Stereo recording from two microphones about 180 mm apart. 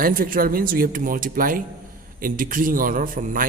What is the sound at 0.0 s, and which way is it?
A man's voice, 55° right (ahead or behind).